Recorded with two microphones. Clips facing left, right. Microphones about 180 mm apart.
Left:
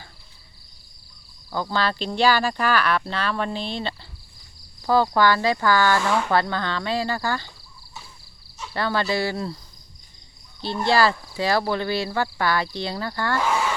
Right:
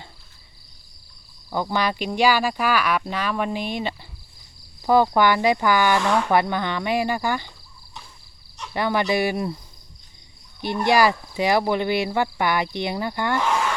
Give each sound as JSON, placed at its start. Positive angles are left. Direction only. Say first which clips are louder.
{"t": 1.5, "sound": "speech", "louder": "right 1 dB", "side_deg": -15}
{"t": 6.0, "sound": "speech", "louder": "right 2 dB", "side_deg": 0}
{"t": 6.2, "sound": "speech", "louder": "right 2 dB", "side_deg": -15}
{"t": 8.7, "sound": "speech", "louder": "right 2 dB", "side_deg": -15}
{"t": 10.8, "sound": "speech", "louder": "right 1 dB", "side_deg": -15}
{"t": 13.4, "sound": "a sound", "louder": "left 2 dB", "side_deg": 5}